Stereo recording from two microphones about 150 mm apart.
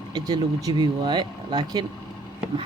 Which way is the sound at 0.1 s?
25° right (ahead or behind).